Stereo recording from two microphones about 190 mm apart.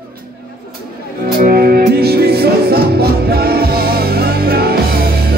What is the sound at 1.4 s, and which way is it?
Music, 50° right (ahead or behind).